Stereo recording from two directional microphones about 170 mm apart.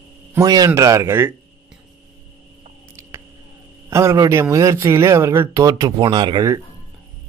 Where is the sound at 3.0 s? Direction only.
15° right (ahead or behind).